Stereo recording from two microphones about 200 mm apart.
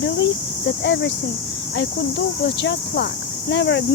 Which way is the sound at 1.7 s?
60° left (ahead or behind).